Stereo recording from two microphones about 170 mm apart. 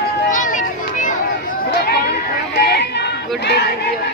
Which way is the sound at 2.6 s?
75° left (ahead or behind).